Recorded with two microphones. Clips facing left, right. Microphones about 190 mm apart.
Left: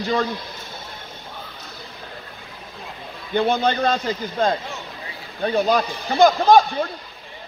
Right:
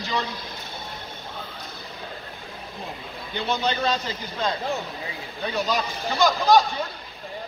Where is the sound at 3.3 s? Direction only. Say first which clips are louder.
Left 6 dB; 55° left (ahead or behind).